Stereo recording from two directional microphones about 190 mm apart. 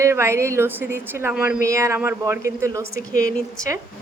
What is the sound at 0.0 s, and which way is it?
A woman's voice, 15° right (ahead or behind).